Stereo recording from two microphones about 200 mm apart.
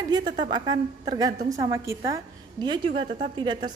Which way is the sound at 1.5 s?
15° right (ahead or behind).